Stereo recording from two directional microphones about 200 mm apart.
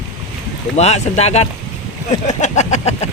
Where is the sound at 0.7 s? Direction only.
35° left (ahead or behind).